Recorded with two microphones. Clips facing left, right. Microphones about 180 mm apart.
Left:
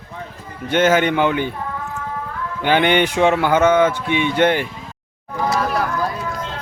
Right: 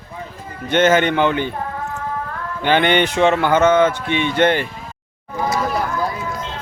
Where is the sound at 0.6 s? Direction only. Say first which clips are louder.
Right 1 dB; 10° left (ahead or behind).